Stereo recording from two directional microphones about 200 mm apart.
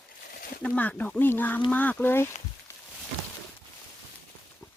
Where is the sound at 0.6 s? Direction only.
5° left (ahead or behind).